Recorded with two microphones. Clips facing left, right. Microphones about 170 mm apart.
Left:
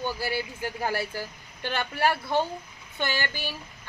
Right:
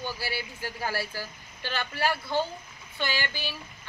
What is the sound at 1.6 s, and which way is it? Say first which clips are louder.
Speech: left 3 dB; 55° left (ahead or behind).